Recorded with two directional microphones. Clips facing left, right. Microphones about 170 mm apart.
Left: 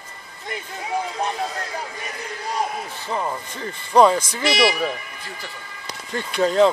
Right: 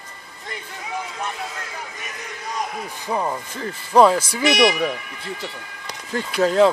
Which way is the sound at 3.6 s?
Centre (ahead or behind).